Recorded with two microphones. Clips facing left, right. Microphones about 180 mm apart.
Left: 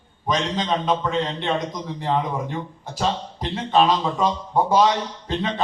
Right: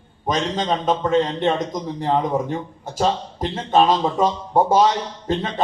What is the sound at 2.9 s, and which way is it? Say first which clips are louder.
A man's voice: right 4 dB; 50° right (ahead or behind).